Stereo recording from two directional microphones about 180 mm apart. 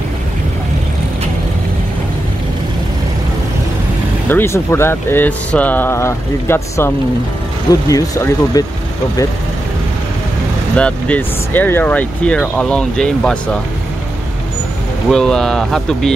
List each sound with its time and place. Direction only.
4.3 s speech: 15° left (ahead or behind)
7.9 s speech: 20° left (ahead or behind)
10.8 s speech: 5° left (ahead or behind)
15.0 s speech: 5° left (ahead or behind)